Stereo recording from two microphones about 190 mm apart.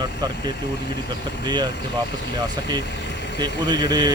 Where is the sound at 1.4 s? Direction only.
20° right (ahead or behind).